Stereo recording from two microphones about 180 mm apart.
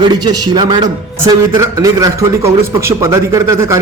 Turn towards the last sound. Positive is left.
turn(degrees=-15)  # may be behind; listen again after turning